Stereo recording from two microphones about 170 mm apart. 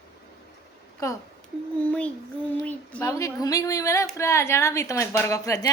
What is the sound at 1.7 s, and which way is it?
A woman's voice, 5° left (ahead or behind).